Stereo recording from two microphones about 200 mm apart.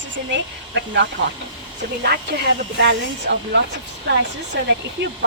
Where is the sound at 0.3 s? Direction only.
60° right (ahead or behind).